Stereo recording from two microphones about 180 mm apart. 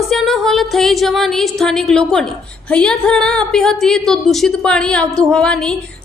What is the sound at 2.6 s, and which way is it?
Speech, 5° left (ahead or behind).